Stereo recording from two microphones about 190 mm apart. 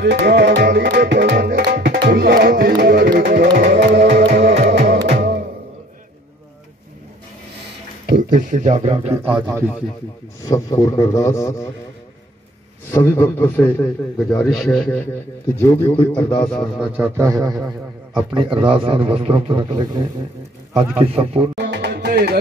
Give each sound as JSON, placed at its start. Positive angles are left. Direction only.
{"t": 0.0, "sound": "tabla", "side_deg": -60}
{"t": 2.0, "sound": "music", "side_deg": -50}
{"t": 4.1, "sound": "music", "side_deg": -35}
{"t": 8.1, "sound": "speech", "side_deg": -45}
{"t": 9.2, "sound": "a man's voice", "side_deg": -25}
{"t": 10.4, "sound": "a man's voice", "side_deg": 15}
{"t": 12.9, "sound": "a man's voice", "side_deg": 10}
{"t": 18.3, "sound": "a man's voice", "side_deg": -25}
{"t": 21.5, "sound": "music", "side_deg": -60}